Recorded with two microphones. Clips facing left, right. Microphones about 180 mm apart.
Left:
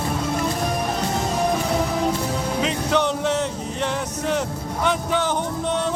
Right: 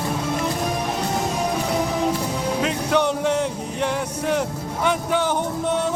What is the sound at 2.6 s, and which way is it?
Music, 10° right (ahead or behind).